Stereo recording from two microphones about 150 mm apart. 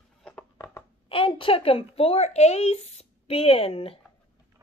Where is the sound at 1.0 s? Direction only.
35° left (ahead or behind).